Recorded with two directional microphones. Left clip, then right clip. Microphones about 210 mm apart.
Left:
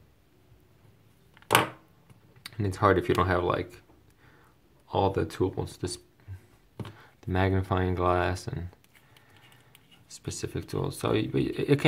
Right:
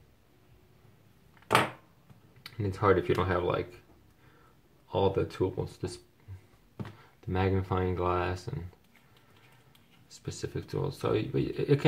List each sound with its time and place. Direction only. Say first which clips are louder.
2.5 s speech: left 2 dB; 35° left (ahead or behind)
4.8 s speech: left 1 dB; 40° left (ahead or behind)
7.0 s speech: left 3 dB; 35° left (ahead or behind)
10.0 s speech: left 2 dB; 40° left (ahead or behind)